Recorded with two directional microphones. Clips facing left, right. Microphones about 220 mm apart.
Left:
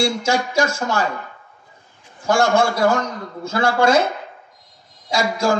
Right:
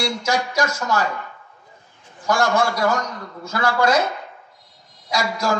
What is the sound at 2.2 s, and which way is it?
A man's voice, 25° left (ahead or behind).